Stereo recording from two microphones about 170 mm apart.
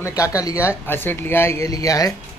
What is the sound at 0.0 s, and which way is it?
Speech, 20° left (ahead or behind).